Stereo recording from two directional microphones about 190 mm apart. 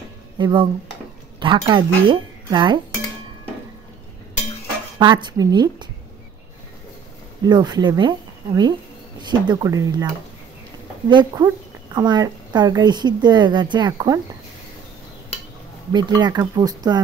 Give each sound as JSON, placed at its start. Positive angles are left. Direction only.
{"t": 0.4, "sound": "a woman's voice", "side_deg": -25}
{"t": 4.9, "sound": "a woman's voice", "side_deg": -25}
{"t": 7.4, "sound": "a woman's voice", "side_deg": -20}
{"t": 15.9, "sound": "a woman's voice", "side_deg": -25}